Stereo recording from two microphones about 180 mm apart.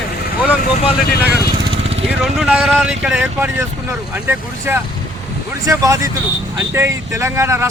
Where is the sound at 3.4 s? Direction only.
15° right (ahead or behind).